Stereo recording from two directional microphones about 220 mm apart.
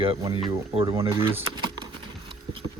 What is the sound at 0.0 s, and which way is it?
Speech, 25° right (ahead or behind).